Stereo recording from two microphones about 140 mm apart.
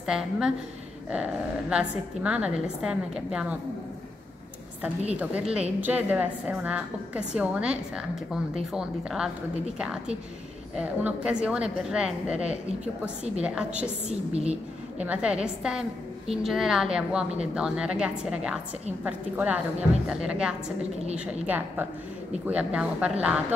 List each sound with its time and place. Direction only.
0.0 s a woman's voice: 5° right (ahead or behind)
5.1 s a woman's voice: 10° right (ahead or behind)
14.0 s a woman's voice: 50° right (ahead or behind)
14.5 s a woman's voice: 10° right (ahead or behind)